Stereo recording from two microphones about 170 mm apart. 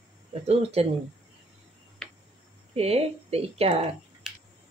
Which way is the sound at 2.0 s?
5° left (ahead or behind).